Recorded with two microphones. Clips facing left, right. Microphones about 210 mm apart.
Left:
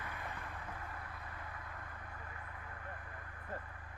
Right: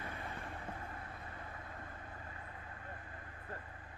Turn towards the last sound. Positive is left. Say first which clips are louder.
# even
turn(degrees=-25)  # may be behind; listen again after turning